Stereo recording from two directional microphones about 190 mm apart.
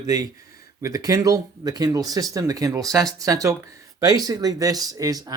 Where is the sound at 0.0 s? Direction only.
20° right (ahead or behind).